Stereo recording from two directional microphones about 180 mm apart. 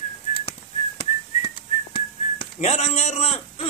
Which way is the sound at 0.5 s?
30° left (ahead or behind).